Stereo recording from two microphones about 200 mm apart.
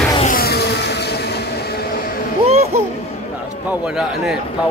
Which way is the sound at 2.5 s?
30° right (ahead or behind).